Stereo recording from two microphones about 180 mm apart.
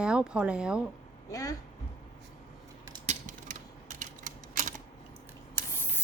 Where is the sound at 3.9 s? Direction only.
45° right (ahead or behind).